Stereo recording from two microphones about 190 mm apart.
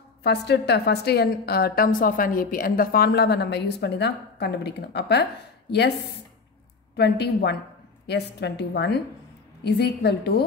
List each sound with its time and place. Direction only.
0.2 s a woman's voice: 60° left (ahead or behind)
7.0 s a woman's voice: 60° left (ahead or behind)